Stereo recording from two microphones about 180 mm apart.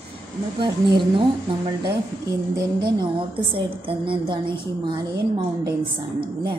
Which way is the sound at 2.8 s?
25° right (ahead or behind).